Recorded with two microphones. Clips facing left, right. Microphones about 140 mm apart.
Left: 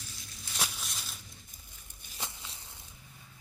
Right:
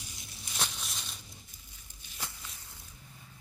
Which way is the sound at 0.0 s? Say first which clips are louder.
Right 1 dB; 20° right (ahead or behind).